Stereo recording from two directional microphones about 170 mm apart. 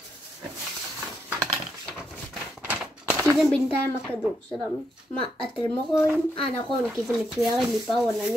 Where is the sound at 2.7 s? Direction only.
10° right (ahead or behind).